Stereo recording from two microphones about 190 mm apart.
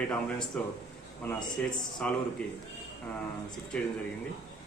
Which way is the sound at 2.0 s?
5° left (ahead or behind).